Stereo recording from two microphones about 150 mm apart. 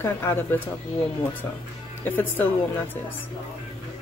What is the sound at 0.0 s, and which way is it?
Speech, 15° left (ahead or behind).